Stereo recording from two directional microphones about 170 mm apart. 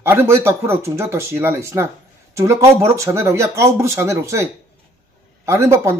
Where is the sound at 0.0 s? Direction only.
15° right (ahead or behind).